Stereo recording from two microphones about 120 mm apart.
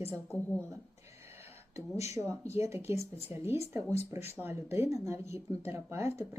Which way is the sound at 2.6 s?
20° right (ahead or behind).